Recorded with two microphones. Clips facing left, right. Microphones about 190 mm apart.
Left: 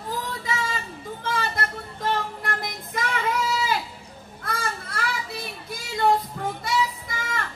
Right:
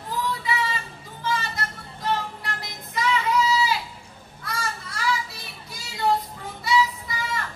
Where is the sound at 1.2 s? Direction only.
55° left (ahead or behind).